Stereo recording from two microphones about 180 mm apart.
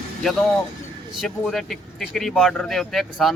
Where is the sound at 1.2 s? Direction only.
Centre (ahead or behind).